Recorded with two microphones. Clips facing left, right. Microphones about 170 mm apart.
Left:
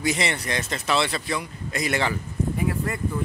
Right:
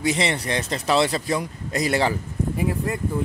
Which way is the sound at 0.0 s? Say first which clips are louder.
Right 2 dB; 30° right (ahead or behind).